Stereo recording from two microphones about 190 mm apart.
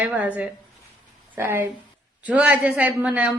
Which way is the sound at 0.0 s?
10° right (ahead or behind).